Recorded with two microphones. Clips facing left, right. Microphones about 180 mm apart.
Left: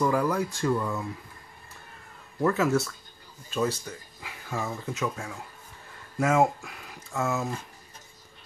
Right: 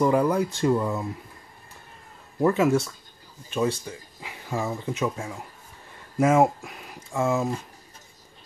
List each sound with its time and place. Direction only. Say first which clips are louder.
0.0 s speech: right 4 dB; 20° right (ahead or behind)
2.4 s speech: right 3 dB; 15° right (ahead or behind)